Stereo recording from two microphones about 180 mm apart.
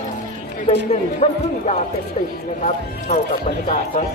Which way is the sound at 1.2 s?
40° left (ahead or behind).